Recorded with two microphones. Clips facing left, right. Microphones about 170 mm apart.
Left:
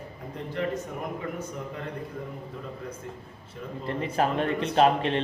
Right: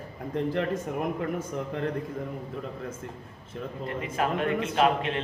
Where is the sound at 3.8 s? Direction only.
35° left (ahead or behind).